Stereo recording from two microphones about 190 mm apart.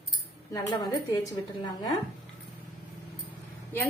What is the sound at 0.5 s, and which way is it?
Speech, 20° left (ahead or behind).